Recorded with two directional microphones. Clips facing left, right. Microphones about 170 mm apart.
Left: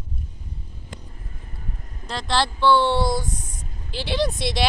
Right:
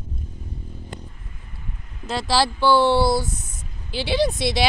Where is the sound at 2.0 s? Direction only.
5° right (ahead or behind).